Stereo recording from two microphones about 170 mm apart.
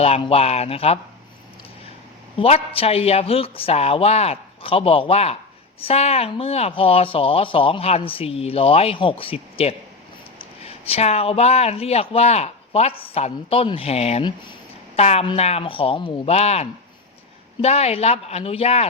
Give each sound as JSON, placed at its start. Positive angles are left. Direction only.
{"t": 0.0, "sound": "speech", "side_deg": 35}
{"t": 2.4, "sound": "speech", "side_deg": 35}